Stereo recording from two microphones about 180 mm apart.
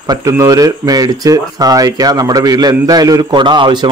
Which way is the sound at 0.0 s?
20° right (ahead or behind).